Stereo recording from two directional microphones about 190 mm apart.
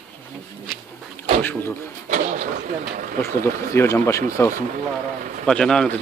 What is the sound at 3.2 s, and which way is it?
Speech, 15° left (ahead or behind).